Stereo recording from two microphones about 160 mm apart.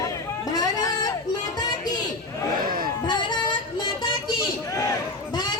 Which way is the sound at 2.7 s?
65° right (ahead or behind).